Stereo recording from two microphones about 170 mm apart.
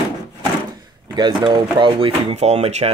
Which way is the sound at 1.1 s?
25° right (ahead or behind).